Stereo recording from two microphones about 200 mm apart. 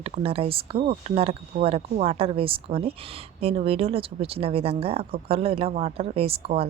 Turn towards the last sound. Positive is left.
turn(degrees=-30)  # may be behind; listen again after turning